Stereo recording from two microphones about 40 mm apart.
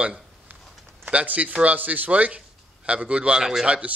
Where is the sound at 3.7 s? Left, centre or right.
Right.